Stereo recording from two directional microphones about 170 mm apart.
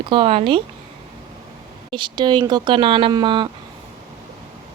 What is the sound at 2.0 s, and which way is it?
Speech, 25° right (ahead or behind).